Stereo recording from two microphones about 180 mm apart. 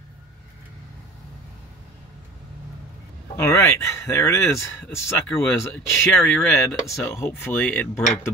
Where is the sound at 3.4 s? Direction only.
15° left (ahead or behind).